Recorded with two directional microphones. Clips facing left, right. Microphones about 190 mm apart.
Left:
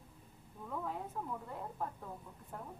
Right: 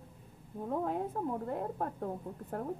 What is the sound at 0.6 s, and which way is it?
A woman's voice, 45° right (ahead or behind).